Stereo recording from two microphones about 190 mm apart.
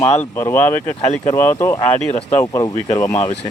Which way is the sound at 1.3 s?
15° left (ahead or behind).